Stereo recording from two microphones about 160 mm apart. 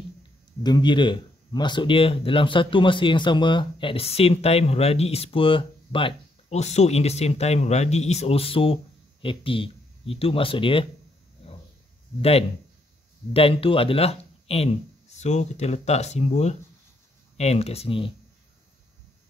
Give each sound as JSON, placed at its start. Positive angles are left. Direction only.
{"t": 0.7, "sound": "speech", "side_deg": 30}
{"t": 11.4, "sound": "a sound", "side_deg": 35}
{"t": 12.2, "sound": "speech", "side_deg": 40}